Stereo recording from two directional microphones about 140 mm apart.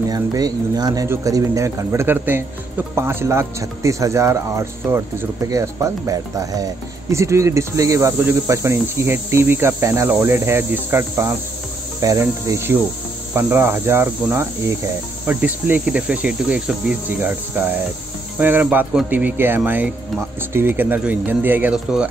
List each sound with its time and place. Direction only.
0.1 s speech: 25° right (ahead or behind)
10.1 s cricket: 20° right (ahead or behind)
12.0 s speech: 25° right (ahead or behind)
13.3 s cricket: 15° right (ahead or behind)